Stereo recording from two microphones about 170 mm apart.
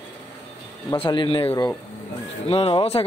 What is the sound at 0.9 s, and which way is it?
Speech, 30° left (ahead or behind).